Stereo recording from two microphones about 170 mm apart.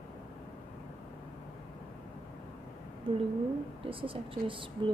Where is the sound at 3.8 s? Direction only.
30° right (ahead or behind).